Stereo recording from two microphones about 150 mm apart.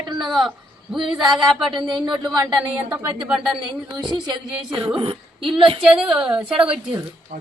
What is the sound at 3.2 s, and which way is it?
A woman's voice, centre (ahead or behind).